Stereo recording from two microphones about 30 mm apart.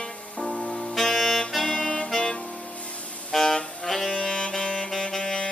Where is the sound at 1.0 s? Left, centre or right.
Centre.